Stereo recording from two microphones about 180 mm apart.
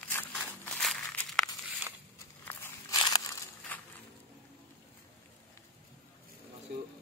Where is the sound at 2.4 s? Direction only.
15° left (ahead or behind).